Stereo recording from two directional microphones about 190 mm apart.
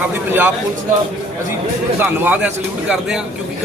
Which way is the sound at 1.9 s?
10° right (ahead or behind).